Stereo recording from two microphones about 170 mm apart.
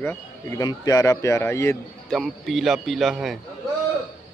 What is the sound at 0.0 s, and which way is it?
Speech, 15° left (ahead or behind).